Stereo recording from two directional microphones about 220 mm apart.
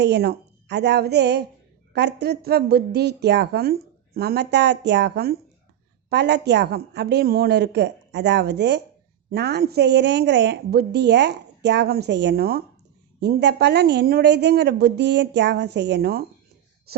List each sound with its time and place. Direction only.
0.0 s a woman's voice: 45° right (ahead or behind)